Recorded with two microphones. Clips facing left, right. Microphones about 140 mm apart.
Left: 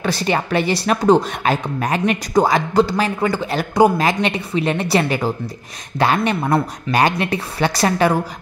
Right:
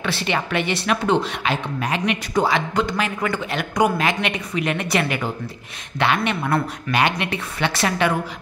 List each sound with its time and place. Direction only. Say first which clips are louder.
0.0 s speech: left 4 dB; 40° left (ahead or behind)